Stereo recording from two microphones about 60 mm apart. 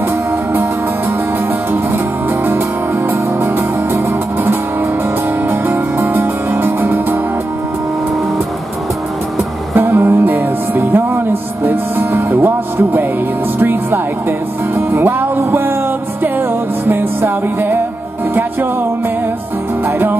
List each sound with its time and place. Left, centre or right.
3.1 s music: right
5.5 s music: right
9.8 s music: right